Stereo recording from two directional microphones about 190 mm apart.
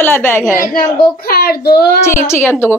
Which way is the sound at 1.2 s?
55° left (ahead or behind).